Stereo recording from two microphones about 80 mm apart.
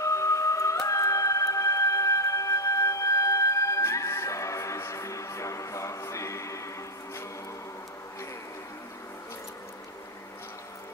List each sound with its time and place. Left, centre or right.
0.0 s emergency vehicle: left